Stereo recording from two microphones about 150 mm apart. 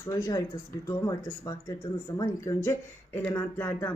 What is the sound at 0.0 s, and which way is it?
Speech, 20° left (ahead or behind).